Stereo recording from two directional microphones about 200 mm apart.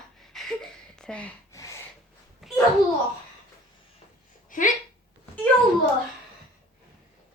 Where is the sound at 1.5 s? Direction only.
15° left (ahead or behind).